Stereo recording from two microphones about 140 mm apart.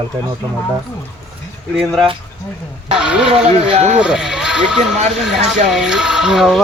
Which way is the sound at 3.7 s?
50° right (ahead or behind).